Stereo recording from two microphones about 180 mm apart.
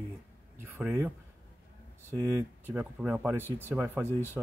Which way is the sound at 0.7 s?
5° right (ahead or behind).